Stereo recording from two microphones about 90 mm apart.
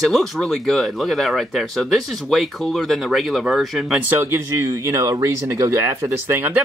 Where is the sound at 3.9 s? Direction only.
25° right (ahead or behind).